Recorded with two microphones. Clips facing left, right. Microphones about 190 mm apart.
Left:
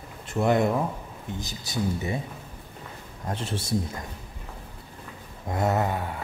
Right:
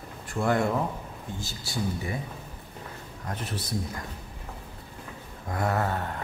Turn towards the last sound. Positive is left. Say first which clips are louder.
# left 2 dB
turn(degrees=10)  # may be behind; listen again after turning